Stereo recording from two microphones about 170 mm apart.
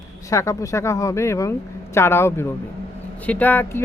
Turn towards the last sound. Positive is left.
turn(degrees=10)  # may be behind; listen again after turning